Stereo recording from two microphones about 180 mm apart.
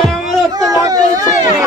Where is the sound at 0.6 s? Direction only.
20° right (ahead or behind).